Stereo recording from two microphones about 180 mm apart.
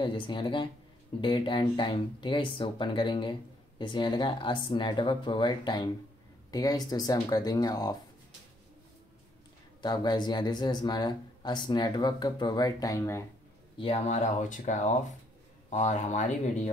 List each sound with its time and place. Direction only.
0.0 s speech: 25° left (ahead or behind)
9.8 s speech: 25° left (ahead or behind)
13.7 s speech: 35° left (ahead or behind)